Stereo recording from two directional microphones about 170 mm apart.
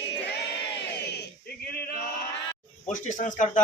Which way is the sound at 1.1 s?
70° left (ahead or behind).